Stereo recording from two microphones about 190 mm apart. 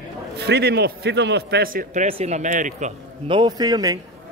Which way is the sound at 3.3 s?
20° right (ahead or behind).